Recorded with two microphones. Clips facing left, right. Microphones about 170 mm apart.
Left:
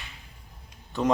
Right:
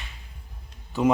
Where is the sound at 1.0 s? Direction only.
10° right (ahead or behind).